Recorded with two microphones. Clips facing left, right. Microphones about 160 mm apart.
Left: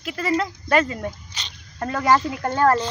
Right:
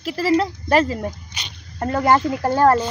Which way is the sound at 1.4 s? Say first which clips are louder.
Right 2 dB; 10° right (ahead or behind).